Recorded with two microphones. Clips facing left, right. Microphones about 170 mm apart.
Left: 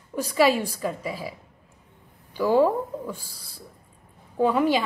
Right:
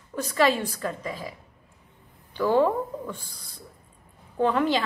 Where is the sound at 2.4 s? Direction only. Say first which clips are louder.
Left 2 dB; 10° left (ahead or behind).